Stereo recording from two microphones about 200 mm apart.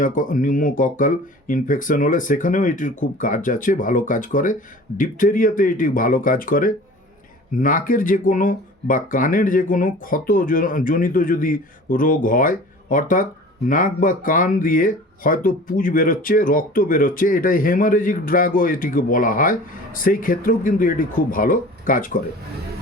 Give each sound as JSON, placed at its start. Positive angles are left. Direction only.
{"t": 0.0, "sound": "speech", "side_deg": 40}